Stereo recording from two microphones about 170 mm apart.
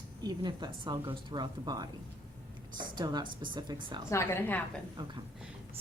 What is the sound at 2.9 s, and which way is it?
Speech, 25° right (ahead or behind).